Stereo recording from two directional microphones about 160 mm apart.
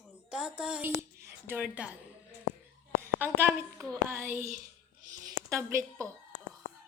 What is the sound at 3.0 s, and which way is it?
Speech, 15° right (ahead or behind).